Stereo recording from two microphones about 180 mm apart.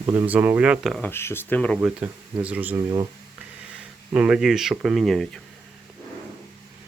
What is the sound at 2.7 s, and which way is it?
Speech, 25° right (ahead or behind).